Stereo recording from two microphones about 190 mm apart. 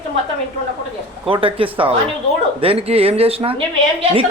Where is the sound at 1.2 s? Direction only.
30° right (ahead or behind).